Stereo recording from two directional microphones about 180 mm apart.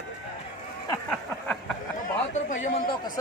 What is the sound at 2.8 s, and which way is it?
Speech, 25° left (ahead or behind).